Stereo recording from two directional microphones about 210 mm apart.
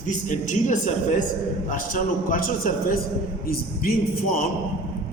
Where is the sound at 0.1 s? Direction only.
35° left (ahead or behind).